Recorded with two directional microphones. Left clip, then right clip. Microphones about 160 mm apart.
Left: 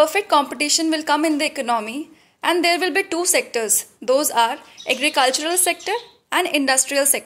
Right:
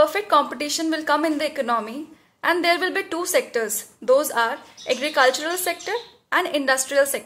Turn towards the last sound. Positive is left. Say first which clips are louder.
# even
turn(degrees=35)  # may be behind; listen again after turning